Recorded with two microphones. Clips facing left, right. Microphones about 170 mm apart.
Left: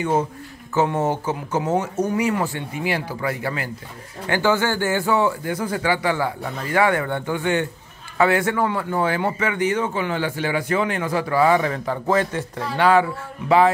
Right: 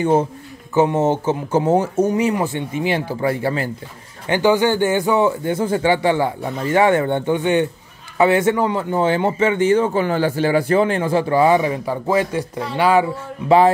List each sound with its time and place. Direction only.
0.0 s speech: 30° right (ahead or behind)
0.7 s speech: 20° right (ahead or behind)
4.3 s speech: 15° right (ahead or behind)